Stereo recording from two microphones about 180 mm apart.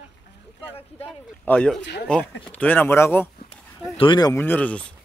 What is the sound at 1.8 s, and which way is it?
Speech, 70° left (ahead or behind).